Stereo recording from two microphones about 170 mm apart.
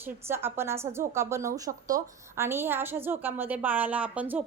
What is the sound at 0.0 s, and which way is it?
A woman's voice, 15° right (ahead or behind).